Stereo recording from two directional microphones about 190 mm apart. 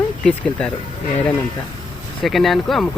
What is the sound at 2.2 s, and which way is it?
Speech, centre (ahead or behind).